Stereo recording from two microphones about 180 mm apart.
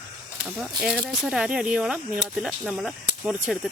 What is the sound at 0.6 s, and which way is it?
Speech, 5° right (ahead or behind).